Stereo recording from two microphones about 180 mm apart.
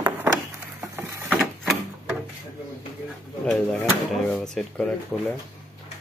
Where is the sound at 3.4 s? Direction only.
5° left (ahead or behind).